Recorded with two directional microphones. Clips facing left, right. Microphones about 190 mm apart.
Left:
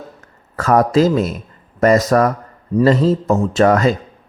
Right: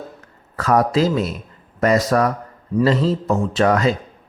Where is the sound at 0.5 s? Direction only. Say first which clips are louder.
Left 4 dB; 45° left (ahead or behind).